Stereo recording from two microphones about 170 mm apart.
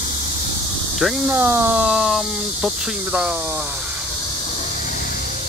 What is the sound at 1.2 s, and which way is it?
Speech, 15° right (ahead or behind).